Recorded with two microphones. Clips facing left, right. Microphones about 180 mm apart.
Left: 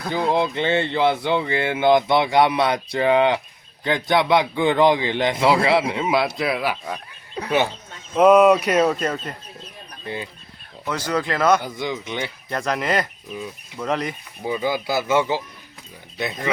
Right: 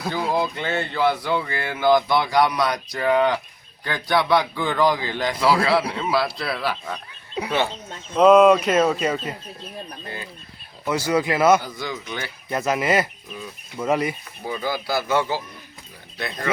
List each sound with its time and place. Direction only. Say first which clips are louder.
0.3 s speech: left 3 dB; 25° left (ahead or behind)
7.4 s speech: right 2 dB; 10° right (ahead or behind)
8.1 s a sound: even; 5° left (ahead or behind)
10.8 s speech: right 3 dB; 10° right (ahead or behind)
11.6 s speech: left 4 dB; 20° left (ahead or behind)
12.5 s speech: right 3 dB; 5° right (ahead or behind)
14.4 s speech: left 3 dB; 15° left (ahead or behind)